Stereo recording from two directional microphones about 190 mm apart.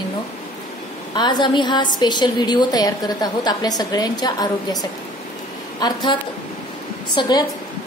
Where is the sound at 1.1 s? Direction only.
25° left (ahead or behind).